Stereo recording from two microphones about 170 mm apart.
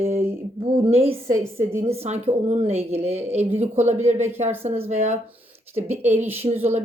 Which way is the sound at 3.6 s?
40° right (ahead or behind).